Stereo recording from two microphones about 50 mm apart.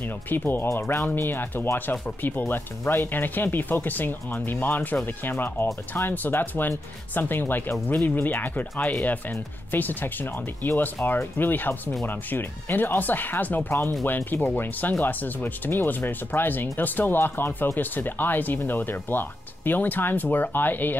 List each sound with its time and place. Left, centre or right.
0.0 s speech: left
16.1 s speech: left